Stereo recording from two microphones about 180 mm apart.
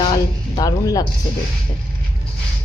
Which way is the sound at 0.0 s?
25° left (ahead or behind).